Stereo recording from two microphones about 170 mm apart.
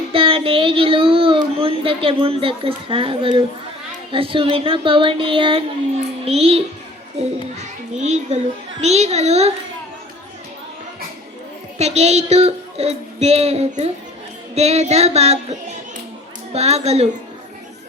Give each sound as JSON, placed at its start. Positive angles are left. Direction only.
{"t": 0.1, "sound": "child singing", "side_deg": -30}
{"t": 7.9, "sound": "child singing", "side_deg": -40}
{"t": 11.8, "sound": "child singing", "side_deg": -40}